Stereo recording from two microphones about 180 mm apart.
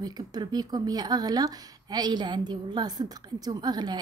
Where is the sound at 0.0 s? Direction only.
20° right (ahead or behind).